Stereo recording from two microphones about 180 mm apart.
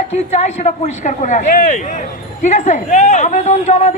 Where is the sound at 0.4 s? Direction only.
40° left (ahead or behind).